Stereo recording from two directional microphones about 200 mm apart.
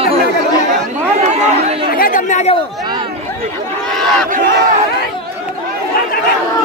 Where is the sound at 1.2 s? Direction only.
35° right (ahead or behind).